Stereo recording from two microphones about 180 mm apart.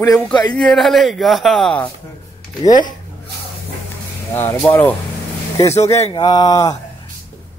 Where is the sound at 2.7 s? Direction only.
45° left (ahead or behind).